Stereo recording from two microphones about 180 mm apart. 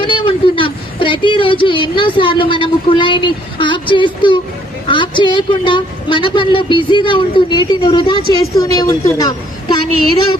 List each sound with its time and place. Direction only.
0.0 s a woman's voice: 30° left (ahead or behind)